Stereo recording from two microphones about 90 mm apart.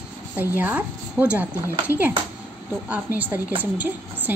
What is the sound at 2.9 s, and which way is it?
Speech, 20° right (ahead or behind).